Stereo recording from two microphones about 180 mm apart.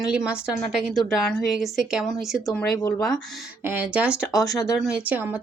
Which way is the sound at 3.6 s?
10° right (ahead or behind).